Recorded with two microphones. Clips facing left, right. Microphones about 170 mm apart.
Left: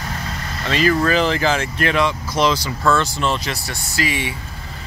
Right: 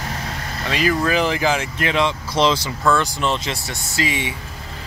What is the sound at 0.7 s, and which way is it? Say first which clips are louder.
Speech: left 2 dB; 10° right (ahead or behind).